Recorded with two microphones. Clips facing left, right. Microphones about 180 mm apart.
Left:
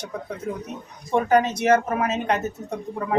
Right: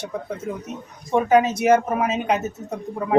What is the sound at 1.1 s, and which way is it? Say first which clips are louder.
Speech: right 2 dB; 5° right (ahead or behind).